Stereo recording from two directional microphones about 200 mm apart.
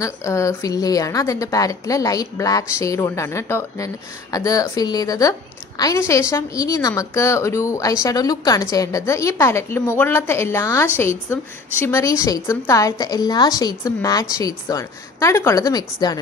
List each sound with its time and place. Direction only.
0.0 s a woman's voice: 15° left (ahead or behind)